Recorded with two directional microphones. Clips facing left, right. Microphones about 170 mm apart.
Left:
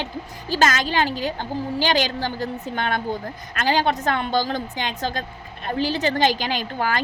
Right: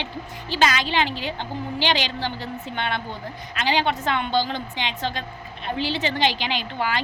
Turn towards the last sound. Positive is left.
turn(degrees=45)  # may be behind; listen again after turning